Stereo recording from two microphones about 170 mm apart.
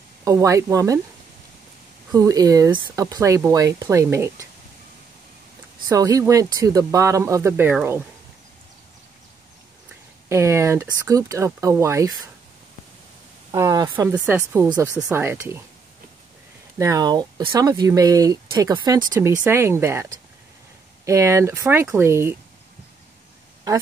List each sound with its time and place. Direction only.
0.2 s speech: 20° right (ahead or behind)
2.1 s speech: 20° right (ahead or behind)
5.9 s speech: 20° right (ahead or behind)
10.2 s speech: 15° right (ahead or behind)
13.5 s speech: 20° right (ahead or behind)
16.7 s speech: 20° right (ahead or behind)